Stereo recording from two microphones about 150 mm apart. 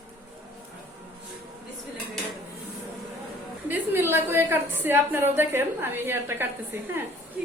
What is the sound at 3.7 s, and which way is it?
A woman's voice, 15° right (ahead or behind).